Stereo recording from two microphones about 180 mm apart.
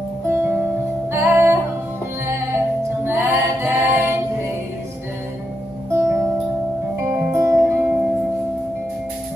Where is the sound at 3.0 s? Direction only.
10° right (ahead or behind).